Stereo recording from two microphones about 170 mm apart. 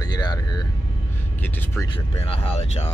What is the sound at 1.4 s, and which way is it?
Speech, 10° left (ahead or behind).